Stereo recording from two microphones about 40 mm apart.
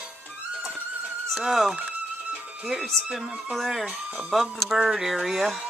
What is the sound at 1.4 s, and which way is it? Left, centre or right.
Speech, centre.